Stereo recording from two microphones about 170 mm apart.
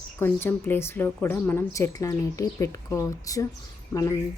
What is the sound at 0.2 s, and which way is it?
A woman's voice, 15° left (ahead or behind).